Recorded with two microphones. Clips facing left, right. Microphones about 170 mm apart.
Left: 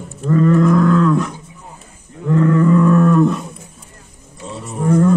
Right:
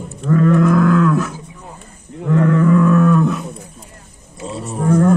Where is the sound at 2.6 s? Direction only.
Centre (ahead or behind).